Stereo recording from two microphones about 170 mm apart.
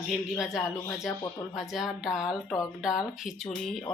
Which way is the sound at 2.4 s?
20° left (ahead or behind).